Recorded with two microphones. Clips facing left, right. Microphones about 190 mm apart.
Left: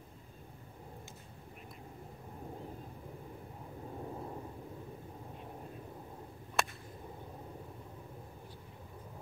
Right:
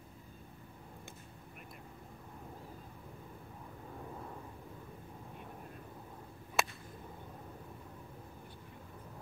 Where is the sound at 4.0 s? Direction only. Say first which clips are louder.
Left 4 dB; 25° left (ahead or behind).